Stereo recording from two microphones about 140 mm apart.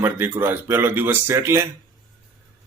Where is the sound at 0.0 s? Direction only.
15° right (ahead or behind).